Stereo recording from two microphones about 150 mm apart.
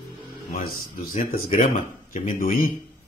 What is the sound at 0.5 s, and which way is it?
Speech, 70° left (ahead or behind).